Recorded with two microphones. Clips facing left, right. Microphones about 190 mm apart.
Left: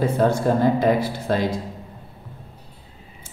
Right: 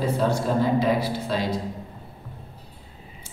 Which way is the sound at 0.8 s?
50° left (ahead or behind).